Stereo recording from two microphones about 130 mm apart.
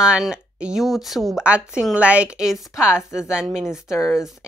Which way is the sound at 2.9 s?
20° left (ahead or behind).